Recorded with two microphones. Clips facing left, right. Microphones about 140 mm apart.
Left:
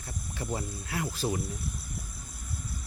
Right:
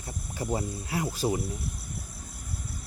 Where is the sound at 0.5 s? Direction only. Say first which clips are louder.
Right 4 dB; 10° right (ahead or behind).